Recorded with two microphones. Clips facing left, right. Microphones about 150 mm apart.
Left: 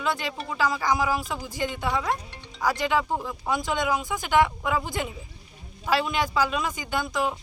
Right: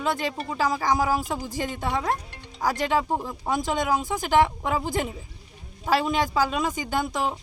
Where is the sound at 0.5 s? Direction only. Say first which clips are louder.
Right 1 dB; 40° right (ahead or behind).